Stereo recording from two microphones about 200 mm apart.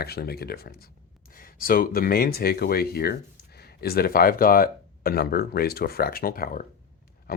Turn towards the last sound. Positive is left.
turn(degrees=45)  # may be behind; listen again after turning